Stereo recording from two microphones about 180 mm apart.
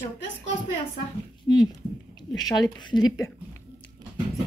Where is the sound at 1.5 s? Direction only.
20° left (ahead or behind).